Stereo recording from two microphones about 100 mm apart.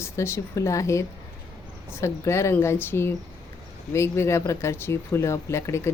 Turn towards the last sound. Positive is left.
turn(degrees=25)  # may be behind; listen again after turning